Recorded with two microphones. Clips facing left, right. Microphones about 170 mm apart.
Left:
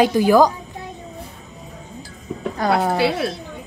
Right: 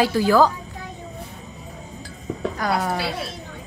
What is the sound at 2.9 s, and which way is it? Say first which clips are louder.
Speech: left 8 dB; 60° left (ahead or behind).